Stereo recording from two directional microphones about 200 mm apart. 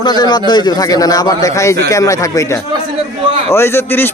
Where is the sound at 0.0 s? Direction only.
20° left (ahead or behind).